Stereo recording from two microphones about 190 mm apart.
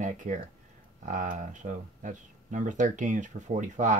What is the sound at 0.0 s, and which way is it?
Speech, 40° right (ahead or behind).